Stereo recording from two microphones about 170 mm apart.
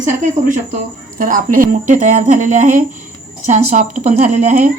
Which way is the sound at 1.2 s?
50° right (ahead or behind).